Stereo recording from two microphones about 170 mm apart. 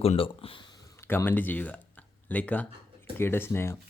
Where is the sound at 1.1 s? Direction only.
10° left (ahead or behind).